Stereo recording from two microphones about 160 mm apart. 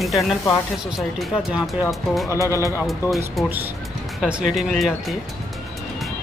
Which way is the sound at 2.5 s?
15° right (ahead or behind).